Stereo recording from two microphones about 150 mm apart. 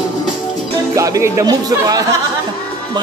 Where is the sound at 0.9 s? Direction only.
20° right (ahead or behind).